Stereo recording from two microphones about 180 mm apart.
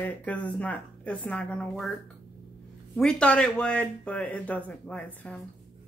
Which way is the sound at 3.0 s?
5° left (ahead or behind).